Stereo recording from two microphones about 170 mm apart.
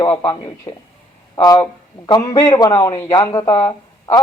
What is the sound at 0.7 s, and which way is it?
A man's voice, 25° left (ahead or behind).